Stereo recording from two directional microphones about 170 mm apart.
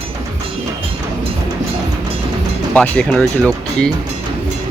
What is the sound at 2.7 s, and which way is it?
Speech, 5° left (ahead or behind).